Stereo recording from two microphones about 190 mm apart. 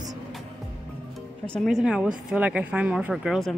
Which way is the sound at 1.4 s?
5° left (ahead or behind).